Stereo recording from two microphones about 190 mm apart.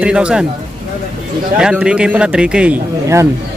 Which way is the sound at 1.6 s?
5° right (ahead or behind).